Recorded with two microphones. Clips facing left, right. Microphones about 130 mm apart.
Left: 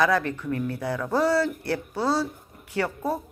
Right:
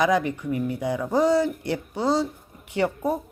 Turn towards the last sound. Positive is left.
turn(degrees=-15)  # may be behind; listen again after turning